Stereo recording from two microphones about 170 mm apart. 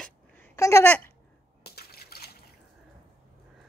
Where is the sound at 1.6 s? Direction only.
65° left (ahead or behind).